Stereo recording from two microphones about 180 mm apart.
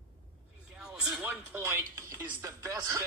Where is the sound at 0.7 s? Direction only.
5° right (ahead or behind).